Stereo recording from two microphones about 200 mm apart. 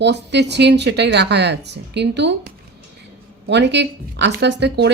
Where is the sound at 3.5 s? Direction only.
60° right (ahead or behind).